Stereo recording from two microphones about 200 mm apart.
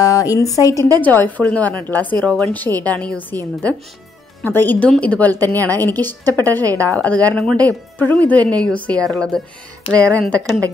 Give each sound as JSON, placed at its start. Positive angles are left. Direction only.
{"t": 0.0, "sound": "a woman's voice", "side_deg": 15}
{"t": 4.4, "sound": "a woman's voice", "side_deg": 10}